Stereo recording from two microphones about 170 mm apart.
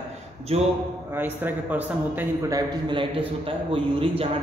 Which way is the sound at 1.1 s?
10° right (ahead or behind).